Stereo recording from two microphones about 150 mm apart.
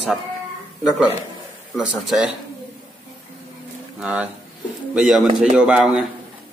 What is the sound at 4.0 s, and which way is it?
A man's voice, 10° right (ahead or behind).